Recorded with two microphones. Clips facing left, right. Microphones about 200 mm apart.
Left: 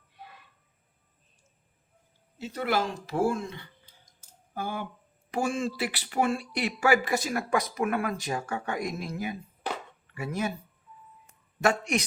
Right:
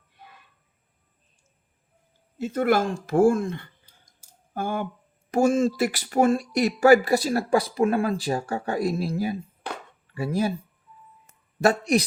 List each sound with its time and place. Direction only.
2.4 s speech: 50° right (ahead or behind); by 10.5 s 30° right (ahead or behind)
11.6 s speech: 35° right (ahead or behind)